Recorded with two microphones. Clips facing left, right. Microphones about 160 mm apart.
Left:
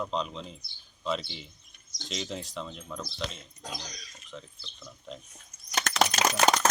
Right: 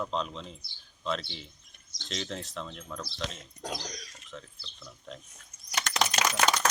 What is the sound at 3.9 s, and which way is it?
Speech, 75° right (ahead or behind).